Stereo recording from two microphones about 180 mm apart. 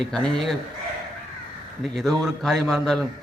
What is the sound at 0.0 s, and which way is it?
Speech, 5° left (ahead or behind).